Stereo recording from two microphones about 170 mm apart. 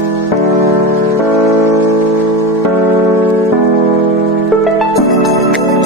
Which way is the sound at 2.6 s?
15° right (ahead or behind).